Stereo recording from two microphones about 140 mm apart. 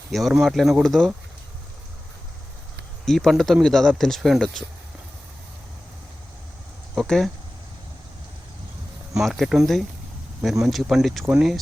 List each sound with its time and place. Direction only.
0.1 s speech: centre (ahead or behind)
3.1 s speech: centre (ahead or behind)
6.9 s speech: centre (ahead or behind)
9.1 s speech: centre (ahead or behind)